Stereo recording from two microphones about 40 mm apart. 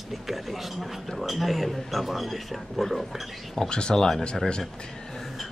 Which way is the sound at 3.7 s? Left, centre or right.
Left.